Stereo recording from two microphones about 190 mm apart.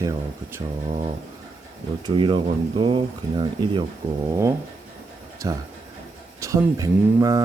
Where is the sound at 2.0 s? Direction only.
25° right (ahead or behind).